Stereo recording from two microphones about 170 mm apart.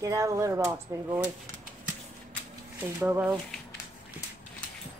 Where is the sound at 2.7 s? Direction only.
10° right (ahead or behind).